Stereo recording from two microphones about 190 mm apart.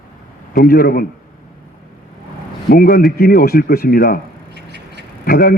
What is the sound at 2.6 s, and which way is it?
A man's voice, 55° left (ahead or behind).